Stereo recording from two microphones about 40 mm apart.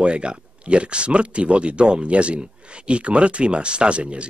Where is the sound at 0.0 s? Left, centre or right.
Right.